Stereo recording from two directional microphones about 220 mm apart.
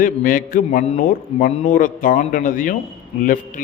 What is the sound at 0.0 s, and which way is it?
A man's voice, 40° left (ahead or behind).